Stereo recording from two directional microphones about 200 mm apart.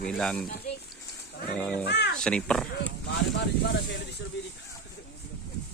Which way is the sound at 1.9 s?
60° left (ahead or behind).